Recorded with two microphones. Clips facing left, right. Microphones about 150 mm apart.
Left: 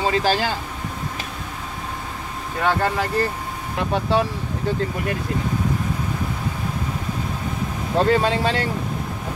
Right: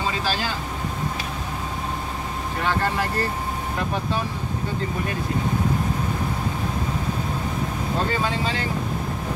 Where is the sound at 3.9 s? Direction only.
85° left.